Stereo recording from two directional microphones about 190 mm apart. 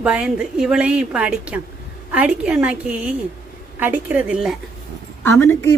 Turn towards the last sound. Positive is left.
turn(degrees=15)  # may be behind; listen again after turning